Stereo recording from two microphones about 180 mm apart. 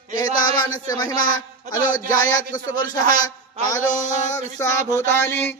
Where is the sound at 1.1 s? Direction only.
50° left (ahead or behind).